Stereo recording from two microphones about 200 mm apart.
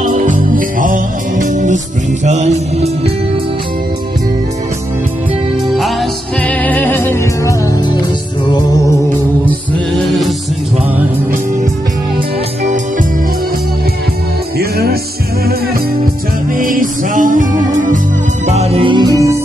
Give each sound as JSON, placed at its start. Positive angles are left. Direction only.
{"t": 0.0, "sound": "music", "side_deg": -40}
{"t": 5.8, "sound": "music", "side_deg": 0}
{"t": 10.0, "sound": "music", "side_deg": 0}
{"t": 14.6, "sound": "music", "side_deg": -50}
{"t": 16.5, "sound": "music", "side_deg": -45}